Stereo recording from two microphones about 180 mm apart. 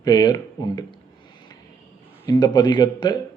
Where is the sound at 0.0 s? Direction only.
20° left (ahead or behind).